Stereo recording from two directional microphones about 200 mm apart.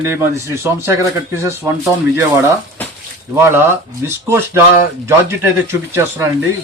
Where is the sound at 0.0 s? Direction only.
10° right (ahead or behind).